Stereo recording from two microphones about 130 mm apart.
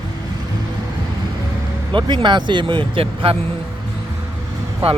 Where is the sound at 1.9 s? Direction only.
35° right (ahead or behind).